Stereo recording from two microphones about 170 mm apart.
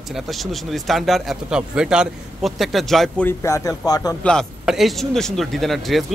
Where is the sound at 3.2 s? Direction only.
20° left (ahead or behind).